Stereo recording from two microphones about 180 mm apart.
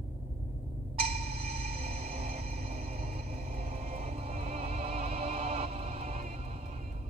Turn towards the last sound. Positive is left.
turn(degrees=-35)  # may be behind; listen again after turning